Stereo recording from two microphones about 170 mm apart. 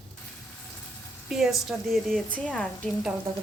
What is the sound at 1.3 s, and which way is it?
A woman's voice, centre (ahead or behind).